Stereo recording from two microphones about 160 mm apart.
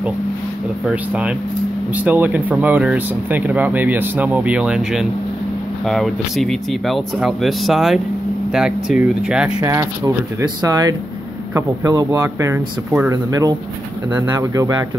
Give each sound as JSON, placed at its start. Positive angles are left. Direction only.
{"t": 0.8, "sound": "speech", "side_deg": -5}
{"t": 9.6, "sound": "speech", "side_deg": -20}